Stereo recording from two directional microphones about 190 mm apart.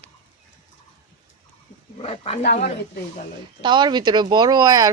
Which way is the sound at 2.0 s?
30° left (ahead or behind).